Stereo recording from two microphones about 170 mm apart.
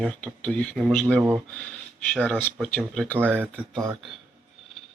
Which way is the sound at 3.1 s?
10° right (ahead or behind).